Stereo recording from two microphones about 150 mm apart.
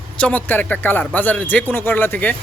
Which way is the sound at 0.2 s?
10° left (ahead or behind).